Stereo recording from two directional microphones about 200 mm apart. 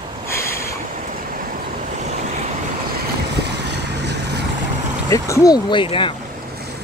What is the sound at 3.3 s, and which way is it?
Vehicle, 55° right (ahead or behind).